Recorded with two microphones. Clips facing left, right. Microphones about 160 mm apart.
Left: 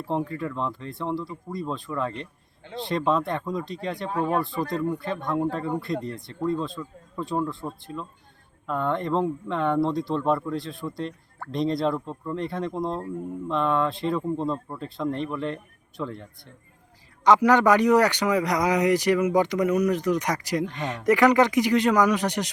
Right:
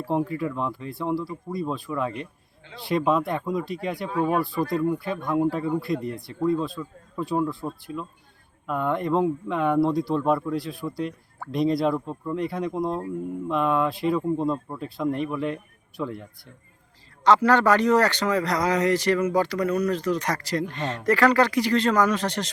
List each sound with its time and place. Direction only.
0.0 s speech: 10° right (ahead or behind)
17.2 s a man's voice: 15° left (ahead or behind)